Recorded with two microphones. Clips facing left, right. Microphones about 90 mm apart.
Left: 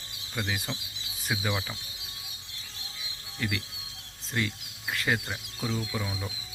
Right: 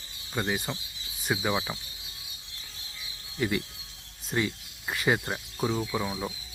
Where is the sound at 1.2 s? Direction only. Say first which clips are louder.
Right 3 dB; 5° right (ahead or behind).